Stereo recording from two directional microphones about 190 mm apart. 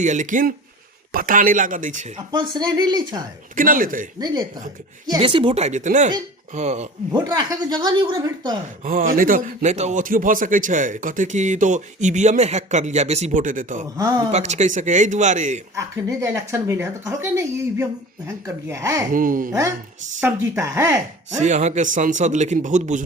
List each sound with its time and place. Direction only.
0.0 s a man's voice: 40° right (ahead or behind)
2.3 s speech: 25° right (ahead or behind)
3.5 s a man's voice: 45° right (ahead or behind)
5.0 s speech: 25° right (ahead or behind)
7.1 s speech: 20° right (ahead or behind)
8.8 s a man's voice: 45° right (ahead or behind)
13.9 s speech: 20° right (ahead or behind)
14.3 s speech: 35° right (ahead or behind)
15.7 s speech: 15° right (ahead or behind)
19.1 s a man's voice: 45° right (ahead or behind)
19.5 s speech: 15° right (ahead or behind)
21.2 s speech: 40° right (ahead or behind)